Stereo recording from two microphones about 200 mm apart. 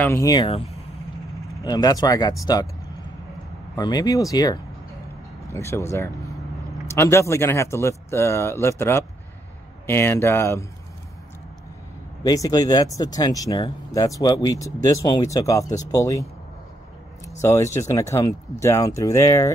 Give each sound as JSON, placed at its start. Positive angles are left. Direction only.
{"t": 0.0, "sound": "speech", "side_deg": 15}
{"t": 3.7, "sound": "speech", "side_deg": 20}
{"t": 12.2, "sound": "speech", "side_deg": 20}
{"t": 17.4, "sound": "speech", "side_deg": 15}